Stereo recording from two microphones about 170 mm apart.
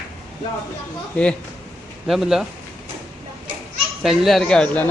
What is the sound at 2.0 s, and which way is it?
Speech, centre (ahead or behind).